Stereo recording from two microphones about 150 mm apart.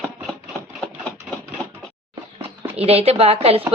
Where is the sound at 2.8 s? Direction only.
40° right (ahead or behind).